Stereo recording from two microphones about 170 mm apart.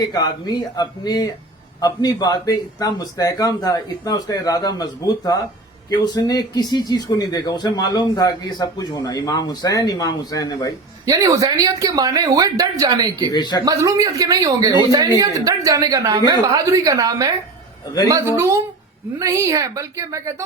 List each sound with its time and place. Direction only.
0.0 s speech: 25° left (ahead or behind)
11.0 s speech: 20° right (ahead or behind)
13.3 s speech: 25° left (ahead or behind)
13.7 s speech: 20° right (ahead or behind)
18.3 s a woman's voice: 15° right (ahead or behind)